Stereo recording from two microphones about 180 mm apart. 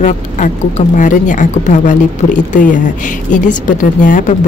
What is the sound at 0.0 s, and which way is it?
A woman's voice, 45° left (ahead or behind).